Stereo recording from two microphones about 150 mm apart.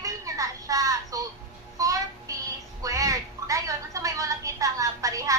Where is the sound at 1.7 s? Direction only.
20° right (ahead or behind).